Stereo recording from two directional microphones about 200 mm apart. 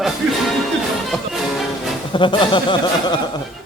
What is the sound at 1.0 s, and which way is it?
Music, centre (ahead or behind).